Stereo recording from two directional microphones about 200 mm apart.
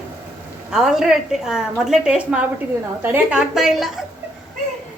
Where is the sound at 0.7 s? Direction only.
5° right (ahead or behind).